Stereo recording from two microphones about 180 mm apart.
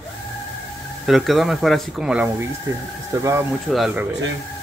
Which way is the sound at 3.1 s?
15° right (ahead or behind).